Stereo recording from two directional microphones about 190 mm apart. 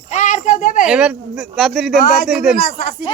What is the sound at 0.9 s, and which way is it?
Speech, 5° right (ahead or behind).